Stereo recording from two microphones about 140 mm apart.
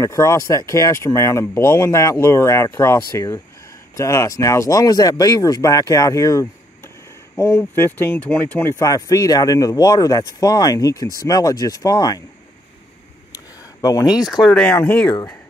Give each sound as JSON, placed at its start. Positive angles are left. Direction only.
{"t": 0.0, "sound": "speech", "side_deg": 25}
{"t": 13.3, "sound": "a sound", "side_deg": 25}
{"t": 14.2, "sound": "speech", "side_deg": 0}
{"t": 14.8, "sound": "speech", "side_deg": 15}